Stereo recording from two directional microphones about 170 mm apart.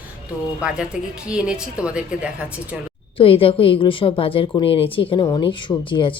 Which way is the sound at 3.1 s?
35° left (ahead or behind).